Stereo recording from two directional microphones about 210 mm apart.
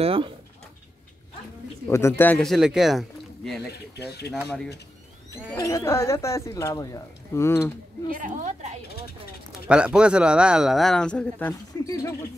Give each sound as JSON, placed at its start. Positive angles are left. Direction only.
{"t": 0.0, "sound": "speech", "side_deg": -25}
{"t": 1.9, "sound": "speech", "side_deg": 10}
{"t": 3.7, "sound": "speech", "side_deg": 50}
{"t": 5.3, "sound": "speech", "side_deg": 15}
{"t": 8.1, "sound": "a woman's voice", "side_deg": -40}
{"t": 9.7, "sound": "speech", "side_deg": -5}